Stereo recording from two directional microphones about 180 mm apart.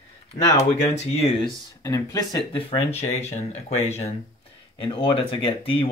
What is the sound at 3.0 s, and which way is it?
Speech, 35° left (ahead or behind).